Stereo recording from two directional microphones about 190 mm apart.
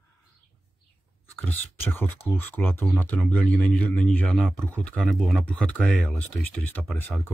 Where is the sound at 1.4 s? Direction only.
10° left (ahead or behind).